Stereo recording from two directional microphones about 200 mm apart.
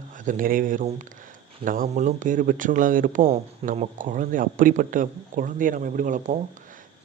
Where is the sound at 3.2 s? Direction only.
30° right (ahead or behind).